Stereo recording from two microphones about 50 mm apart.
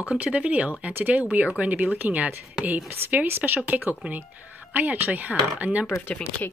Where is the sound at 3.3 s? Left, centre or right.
Right.